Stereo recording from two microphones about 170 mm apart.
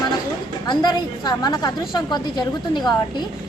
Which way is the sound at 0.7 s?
25° left (ahead or behind).